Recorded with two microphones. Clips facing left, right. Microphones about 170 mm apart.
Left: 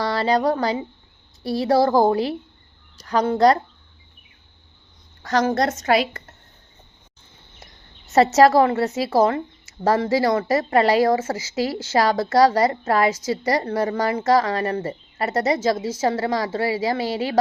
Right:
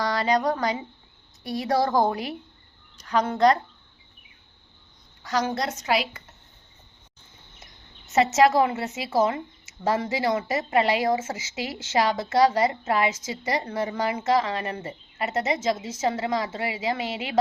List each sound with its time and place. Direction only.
0.0 s a woman's voice: 30° left (ahead or behind)
5.2 s a woman's voice: 45° left (ahead or behind)
8.1 s a woman's voice: 35° left (ahead or behind)